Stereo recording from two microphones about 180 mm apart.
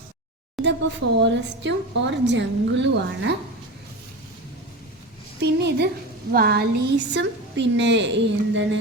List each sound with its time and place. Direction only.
0.6 s speech: 80° right
5.4 s a woman's voice: 70° right (ahead or behind)
6.3 s speech: 60° right (ahead or behind); by 8.8 s 85° right